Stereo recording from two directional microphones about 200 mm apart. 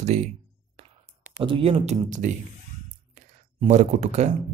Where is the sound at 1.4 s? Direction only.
25° right (ahead or behind).